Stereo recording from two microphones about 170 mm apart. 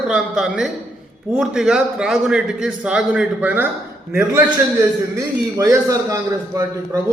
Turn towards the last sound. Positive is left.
turn(degrees=-20)  # may be behind; listen again after turning